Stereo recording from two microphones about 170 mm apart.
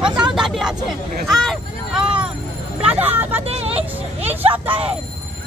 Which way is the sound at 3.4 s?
35° right (ahead or behind).